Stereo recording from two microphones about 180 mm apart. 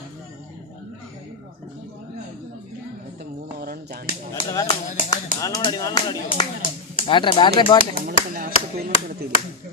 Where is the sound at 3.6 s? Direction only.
55° right (ahead or behind).